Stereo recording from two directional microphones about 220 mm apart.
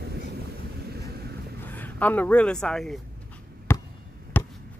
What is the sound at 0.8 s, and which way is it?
Vehicle, 45° right (ahead or behind).